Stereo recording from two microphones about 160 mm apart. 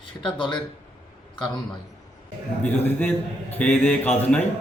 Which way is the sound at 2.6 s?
10° left (ahead or behind).